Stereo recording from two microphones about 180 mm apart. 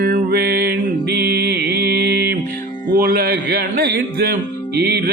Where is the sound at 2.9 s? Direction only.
55° right (ahead or behind).